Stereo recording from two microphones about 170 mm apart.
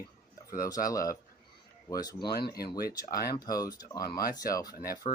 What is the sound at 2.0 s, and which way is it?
Speech, 25° left (ahead or behind).